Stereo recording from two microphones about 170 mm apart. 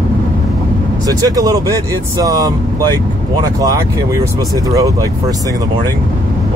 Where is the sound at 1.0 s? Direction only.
20° right (ahead or behind).